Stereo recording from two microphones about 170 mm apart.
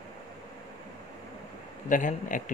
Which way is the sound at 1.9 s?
50° left (ahead or behind).